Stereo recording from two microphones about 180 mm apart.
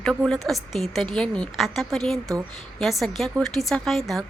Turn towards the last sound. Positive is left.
turn(degrees=0)  # may be behind; listen again after turning